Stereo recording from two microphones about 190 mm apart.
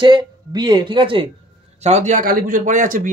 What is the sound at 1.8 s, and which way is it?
A man's voice, 35° right (ahead or behind).